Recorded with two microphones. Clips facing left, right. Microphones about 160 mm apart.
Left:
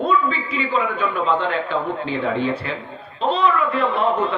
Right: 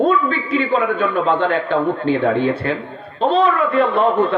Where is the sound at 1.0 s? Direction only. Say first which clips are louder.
Right 4 dB; 55° right (ahead or behind).